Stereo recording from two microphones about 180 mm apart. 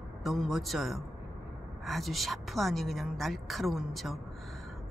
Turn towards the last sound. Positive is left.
turn(degrees=0)  # may be behind; listen again after turning